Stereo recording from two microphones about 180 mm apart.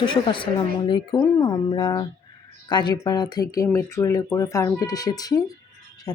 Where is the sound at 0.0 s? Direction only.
25° left (ahead or behind).